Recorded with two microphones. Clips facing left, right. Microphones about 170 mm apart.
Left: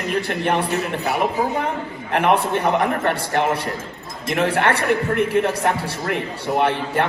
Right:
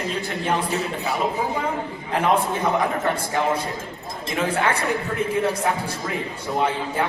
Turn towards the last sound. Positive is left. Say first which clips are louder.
# left 3 dB
turn(degrees=70)  # may be behind; listen again after turning